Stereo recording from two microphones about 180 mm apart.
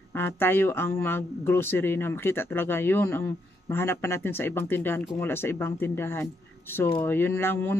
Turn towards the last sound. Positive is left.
turn(degrees=10)  # may be behind; listen again after turning